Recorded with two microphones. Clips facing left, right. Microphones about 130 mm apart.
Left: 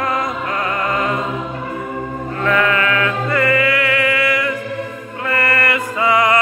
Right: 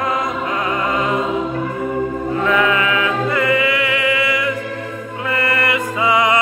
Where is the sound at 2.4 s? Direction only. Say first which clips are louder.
Left 1 dB; 15° right (ahead or behind).